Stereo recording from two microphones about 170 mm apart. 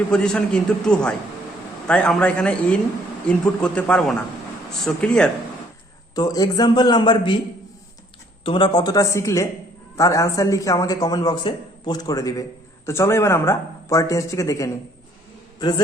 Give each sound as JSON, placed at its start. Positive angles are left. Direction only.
{"t": 0.1, "sound": "a man's voice", "side_deg": 5}
{"t": 6.1, "sound": "a man's voice", "side_deg": 25}
{"t": 8.4, "sound": "a man's voice", "side_deg": 30}